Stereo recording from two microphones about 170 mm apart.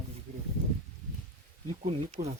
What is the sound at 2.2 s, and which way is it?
Speech, 45° right (ahead or behind).